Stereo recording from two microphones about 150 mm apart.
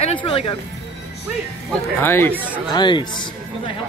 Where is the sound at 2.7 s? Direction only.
30° left (ahead or behind).